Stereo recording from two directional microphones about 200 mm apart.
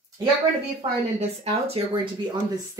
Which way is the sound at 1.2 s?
30° right (ahead or behind).